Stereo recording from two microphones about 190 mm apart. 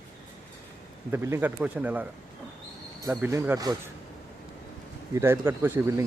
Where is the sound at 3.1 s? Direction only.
10° right (ahead or behind).